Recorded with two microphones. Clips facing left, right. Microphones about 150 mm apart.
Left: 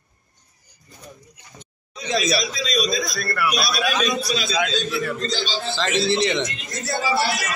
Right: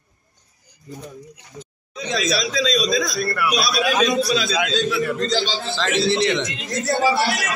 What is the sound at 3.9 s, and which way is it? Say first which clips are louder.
Speech: right 5 dB; 55° right (ahead or behind).